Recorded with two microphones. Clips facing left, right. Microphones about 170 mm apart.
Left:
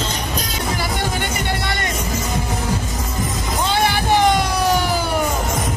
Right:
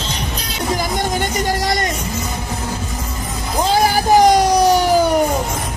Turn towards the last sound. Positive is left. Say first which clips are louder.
# right 6 dB
turn(degrees=-40)  # may be behind; listen again after turning